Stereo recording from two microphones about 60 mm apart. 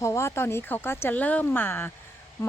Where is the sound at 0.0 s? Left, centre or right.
Left.